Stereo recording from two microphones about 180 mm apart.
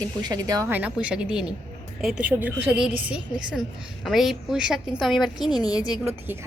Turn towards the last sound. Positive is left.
turn(degrees=-15)  # may be behind; listen again after turning